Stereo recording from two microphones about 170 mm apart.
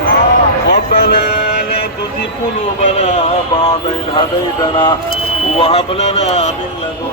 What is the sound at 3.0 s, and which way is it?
Speech, 40° left (ahead or behind).